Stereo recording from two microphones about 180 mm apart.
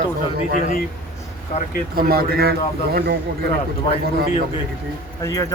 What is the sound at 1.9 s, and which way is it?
Speech, 55° right (ahead or behind).